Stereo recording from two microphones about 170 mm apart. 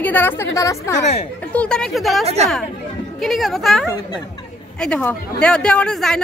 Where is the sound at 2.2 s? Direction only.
40° right (ahead or behind).